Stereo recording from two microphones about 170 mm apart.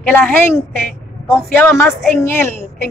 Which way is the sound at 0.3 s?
15° left (ahead or behind).